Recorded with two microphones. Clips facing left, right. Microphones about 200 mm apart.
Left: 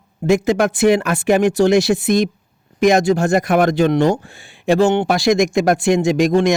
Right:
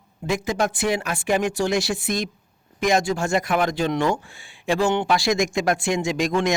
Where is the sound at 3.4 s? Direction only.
50° left (ahead or behind).